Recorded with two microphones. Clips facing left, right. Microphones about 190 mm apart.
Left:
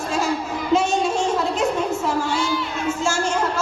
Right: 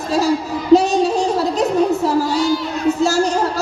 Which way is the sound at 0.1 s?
35° right (ahead or behind).